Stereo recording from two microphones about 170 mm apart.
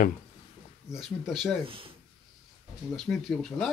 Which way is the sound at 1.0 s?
Centre (ahead or behind).